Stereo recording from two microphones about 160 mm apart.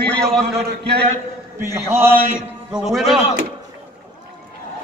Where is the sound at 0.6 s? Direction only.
90° right.